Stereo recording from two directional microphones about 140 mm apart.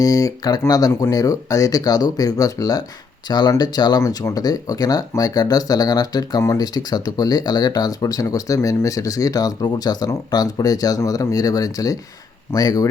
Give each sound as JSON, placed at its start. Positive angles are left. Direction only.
{"t": 0.0, "sound": "speech", "side_deg": 25}